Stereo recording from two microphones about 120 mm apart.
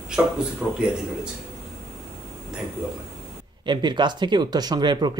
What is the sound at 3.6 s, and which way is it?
Speech, 40° right (ahead or behind).